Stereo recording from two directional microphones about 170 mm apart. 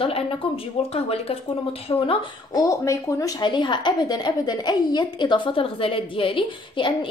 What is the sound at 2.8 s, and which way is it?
A woman's voice, 20° left (ahead or behind).